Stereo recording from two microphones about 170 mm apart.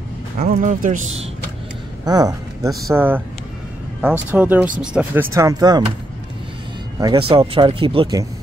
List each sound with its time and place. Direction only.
0.4 s speech: 50° right (ahead or behind)
2.0 s speech: 20° right (ahead or behind)
4.3 s speech: 10° right (ahead or behind)
7.0 s speech: 30° right (ahead or behind)